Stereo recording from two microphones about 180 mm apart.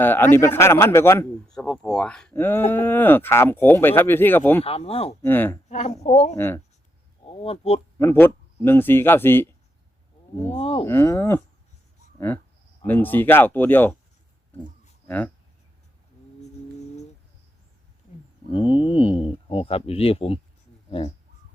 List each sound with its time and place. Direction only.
0.0 s speech: 10° left (ahead or behind)
1.5 s speech: 5° left (ahead or behind)
4.6 s speech: 35° left (ahead or behind)
5.2 s speech: 10° left (ahead or behind)
5.6 s speech: 40° left (ahead or behind)
6.3 s speech: 15° left (ahead or behind)
7.3 s speech: 35° left (ahead or behind)
7.9 s speech: 15° left (ahead or behind)
10.5 s speech: 30° left (ahead or behind)
10.8 s speech: 15° left (ahead or behind)
12.8 s speech: 10° left (ahead or behind)
15.0 s speech: 10° left (ahead or behind)
18.5 s speech: 25° left (ahead or behind)